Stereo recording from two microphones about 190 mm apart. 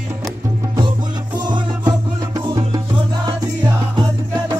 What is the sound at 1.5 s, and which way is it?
Music, 20° right (ahead or behind).